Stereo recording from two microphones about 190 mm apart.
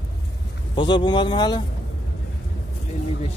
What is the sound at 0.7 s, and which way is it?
Speech, 25° left (ahead or behind).